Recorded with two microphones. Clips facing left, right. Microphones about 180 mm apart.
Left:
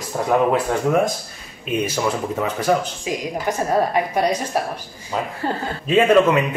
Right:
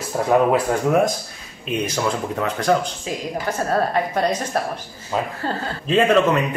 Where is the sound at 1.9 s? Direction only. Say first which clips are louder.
Left 1 dB; 5° left (ahead or behind).